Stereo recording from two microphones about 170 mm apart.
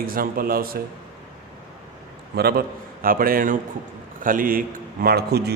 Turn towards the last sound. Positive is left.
turn(degrees=-70)  # may be behind; listen again after turning